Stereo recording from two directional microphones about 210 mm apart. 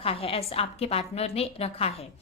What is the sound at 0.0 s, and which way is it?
A woman's voice, 25° left (ahead or behind).